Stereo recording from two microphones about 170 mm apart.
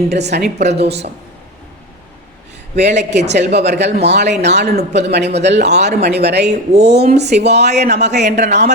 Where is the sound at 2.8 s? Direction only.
85° right.